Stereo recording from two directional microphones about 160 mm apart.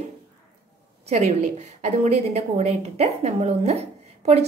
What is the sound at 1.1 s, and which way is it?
A woman's voice, 45° right (ahead or behind).